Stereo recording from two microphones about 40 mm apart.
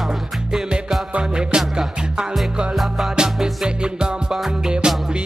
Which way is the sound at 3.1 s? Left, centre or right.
Centre.